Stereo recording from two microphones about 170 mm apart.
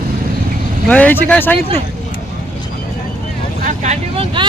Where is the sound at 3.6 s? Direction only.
45° right (ahead or behind).